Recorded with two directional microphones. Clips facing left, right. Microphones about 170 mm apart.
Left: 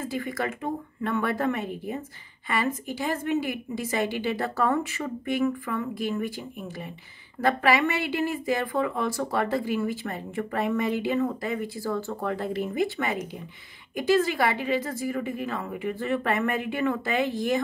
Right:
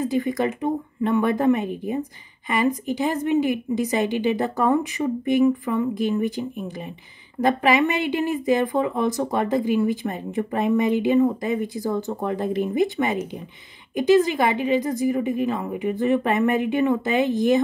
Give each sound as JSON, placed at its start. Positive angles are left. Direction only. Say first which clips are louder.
{"t": 0.0, "sound": "speech", "louder": "right 7 dB", "side_deg": -20}